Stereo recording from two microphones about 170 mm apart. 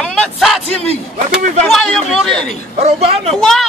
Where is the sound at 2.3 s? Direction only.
40° right (ahead or behind).